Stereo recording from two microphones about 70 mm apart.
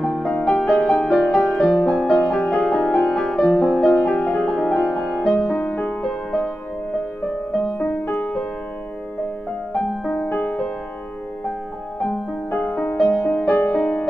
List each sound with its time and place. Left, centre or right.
0.0 s music: centre
7.7 s music: left
8.2 s music: centre
9.8 s music: centre
10.1 s music: left
12.0 s music: centre
13.5 s music: left